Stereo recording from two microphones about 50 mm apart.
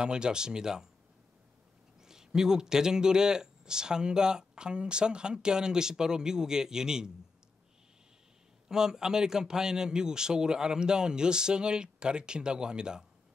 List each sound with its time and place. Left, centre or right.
0.0 s speech: centre
2.0 s speech: centre
8.6 s speech: centre